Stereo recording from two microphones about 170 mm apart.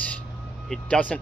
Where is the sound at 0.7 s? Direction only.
5° left (ahead or behind).